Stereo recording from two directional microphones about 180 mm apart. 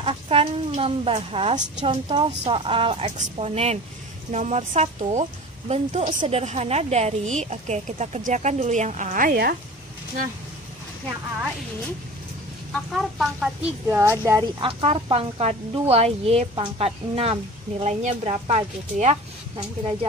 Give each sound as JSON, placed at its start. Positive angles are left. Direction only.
{"t": 0.0, "sound": "speech", "side_deg": -30}
{"t": 12.7, "sound": "speech", "side_deg": 0}
{"t": 13.8, "sound": "speech", "side_deg": -15}
{"t": 14.4, "sound": "speech", "side_deg": -30}